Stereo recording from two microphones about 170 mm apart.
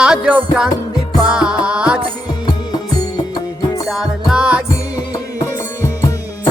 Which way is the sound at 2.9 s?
25° left (ahead or behind).